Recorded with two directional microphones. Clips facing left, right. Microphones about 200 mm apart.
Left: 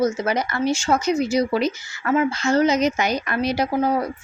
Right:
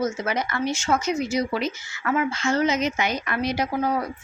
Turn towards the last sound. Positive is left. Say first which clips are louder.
# left 4 dB
turn(degrees=30)  # may be behind; listen again after turning